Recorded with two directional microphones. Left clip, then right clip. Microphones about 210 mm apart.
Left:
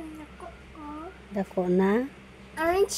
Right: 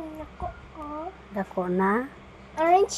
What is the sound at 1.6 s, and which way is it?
A woman's voice, 25° left (ahead or behind).